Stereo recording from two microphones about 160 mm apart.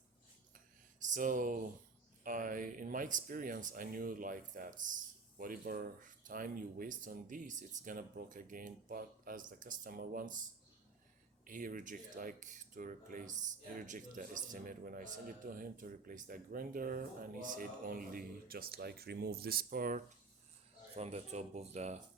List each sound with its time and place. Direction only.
1.1 s speech: 55° right (ahead or behind)
11.4 s speech: 60° right (ahead or behind)
20.9 s speech: 40° right (ahead or behind)